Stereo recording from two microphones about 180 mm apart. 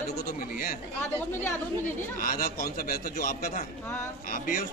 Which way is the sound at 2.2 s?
50° left (ahead or behind).